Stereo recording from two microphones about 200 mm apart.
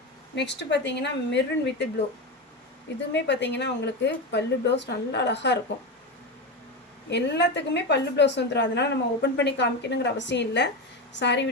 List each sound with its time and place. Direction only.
0.3 s a woman's voice: 60° left (ahead or behind)
3.1 s a woman's voice: 60° left (ahead or behind)
7.1 s a woman's voice: 60° left (ahead or behind)